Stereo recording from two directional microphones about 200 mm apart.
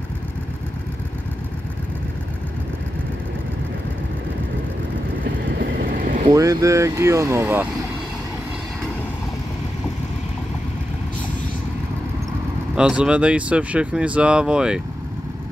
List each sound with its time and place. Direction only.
5.4 s vehicle: 55° right (ahead or behind)
6.2 s speech: 15° right (ahead or behind)
12.7 s speech: 5° right (ahead or behind)